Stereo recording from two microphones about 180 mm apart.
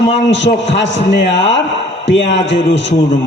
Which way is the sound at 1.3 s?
80° left.